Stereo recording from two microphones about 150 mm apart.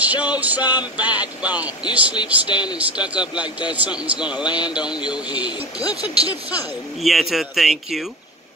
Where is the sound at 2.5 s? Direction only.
30° left (ahead or behind).